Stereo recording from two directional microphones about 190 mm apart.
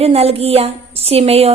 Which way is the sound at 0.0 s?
30° right (ahead or behind).